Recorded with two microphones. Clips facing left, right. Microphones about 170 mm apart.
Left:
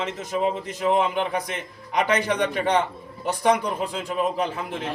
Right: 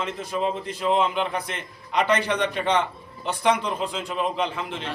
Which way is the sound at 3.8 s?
5° left (ahead or behind).